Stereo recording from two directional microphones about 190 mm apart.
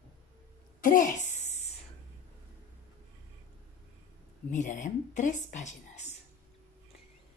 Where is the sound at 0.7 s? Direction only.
45° left (ahead or behind).